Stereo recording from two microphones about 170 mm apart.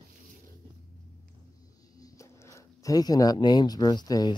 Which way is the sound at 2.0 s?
20° left (ahead or behind).